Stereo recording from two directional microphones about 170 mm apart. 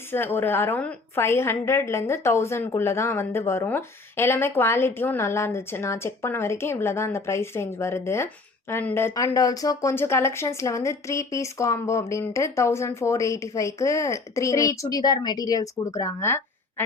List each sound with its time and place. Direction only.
0.1 s a woman's voice: 15° left (ahead or behind)